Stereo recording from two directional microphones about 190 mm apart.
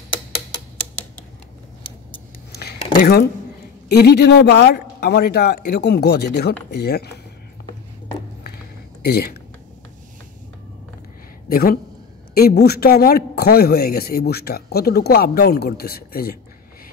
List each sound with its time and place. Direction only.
2.5 s a sound: 50° left (ahead or behind)
3.9 s speech: 60° left (ahead or behind)
11.4 s speech: 50° left (ahead or behind)